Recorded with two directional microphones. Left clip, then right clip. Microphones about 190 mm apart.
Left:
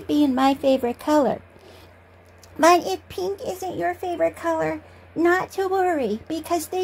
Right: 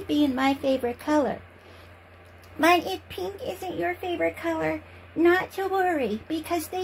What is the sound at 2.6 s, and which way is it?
A child's voice, 60° left (ahead or behind).